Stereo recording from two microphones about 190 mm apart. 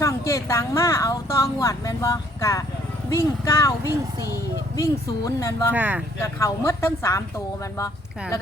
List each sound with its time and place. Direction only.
0.0 s speech: 15° left (ahead or behind)
5.2 s speech: 15° left (ahead or behind)
5.7 s speech: 10° right (ahead or behind)
6.4 s speech: 15° left (ahead or behind)